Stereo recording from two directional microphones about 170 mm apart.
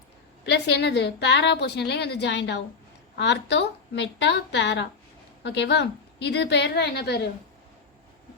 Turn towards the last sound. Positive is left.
turn(degrees=75)  # may be behind; listen again after turning